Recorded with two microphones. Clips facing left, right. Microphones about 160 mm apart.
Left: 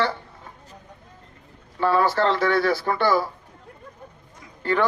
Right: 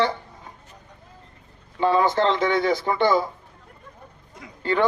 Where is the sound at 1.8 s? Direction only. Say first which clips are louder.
Right 1 dB; 20° right (ahead or behind).